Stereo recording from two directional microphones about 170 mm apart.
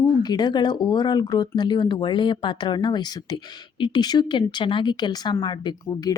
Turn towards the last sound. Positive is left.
turn(degrees=25)  # may be behind; listen again after turning